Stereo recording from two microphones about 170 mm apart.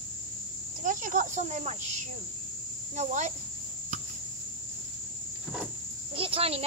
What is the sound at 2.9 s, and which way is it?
Speech, 40° right (ahead or behind).